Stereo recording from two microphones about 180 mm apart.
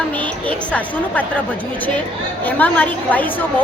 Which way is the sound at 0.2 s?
5° left (ahead or behind).